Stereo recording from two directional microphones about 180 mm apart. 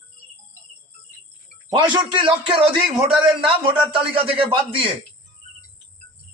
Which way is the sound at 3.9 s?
30° right (ahead or behind).